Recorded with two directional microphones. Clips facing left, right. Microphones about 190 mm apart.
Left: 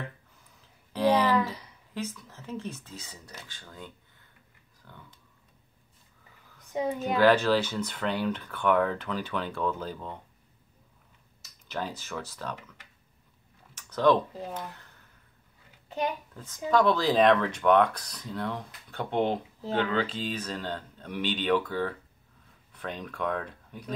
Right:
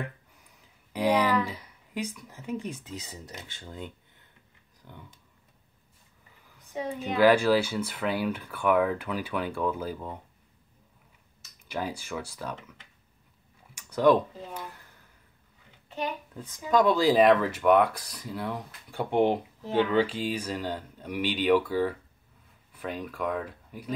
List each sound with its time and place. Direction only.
0.9 s speech: 15° right (ahead or behind)
7.0 s speech: 10° right (ahead or behind)
11.6 s speech: 10° right (ahead or behind)
13.7 s a sound: 10° right (ahead or behind)
16.3 s speech: 15° right (ahead or behind)